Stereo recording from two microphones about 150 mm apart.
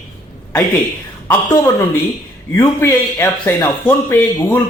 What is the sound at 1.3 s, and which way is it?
Speech, 15° left (ahead or behind).